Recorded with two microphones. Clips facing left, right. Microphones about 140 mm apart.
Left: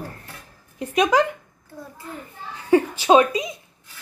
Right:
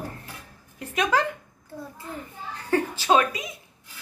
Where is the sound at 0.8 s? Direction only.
15° left (ahead or behind).